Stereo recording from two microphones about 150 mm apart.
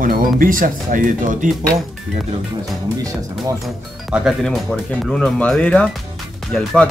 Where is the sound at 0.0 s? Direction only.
70° right (ahead or behind).